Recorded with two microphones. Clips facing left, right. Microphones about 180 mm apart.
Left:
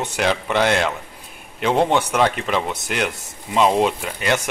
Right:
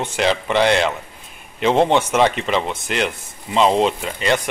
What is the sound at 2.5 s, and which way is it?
Speech, 10° left (ahead or behind).